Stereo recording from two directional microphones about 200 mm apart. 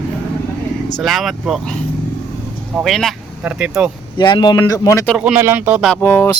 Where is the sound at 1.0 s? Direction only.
Centre (ahead or behind).